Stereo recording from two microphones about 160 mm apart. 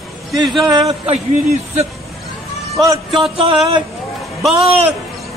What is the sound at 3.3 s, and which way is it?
Speech, 35° right (ahead or behind).